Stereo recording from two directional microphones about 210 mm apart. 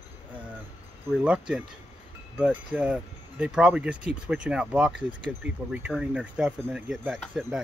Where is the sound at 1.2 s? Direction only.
5° right (ahead or behind).